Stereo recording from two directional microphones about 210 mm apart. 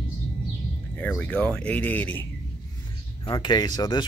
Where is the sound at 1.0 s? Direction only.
5° left (ahead or behind).